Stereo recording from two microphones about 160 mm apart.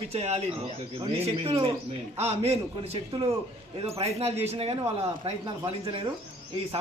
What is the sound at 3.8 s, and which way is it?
Speech, 40° right (ahead or behind).